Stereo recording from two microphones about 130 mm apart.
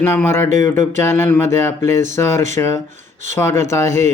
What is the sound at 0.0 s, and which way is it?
Speech, 20° left (ahead or behind).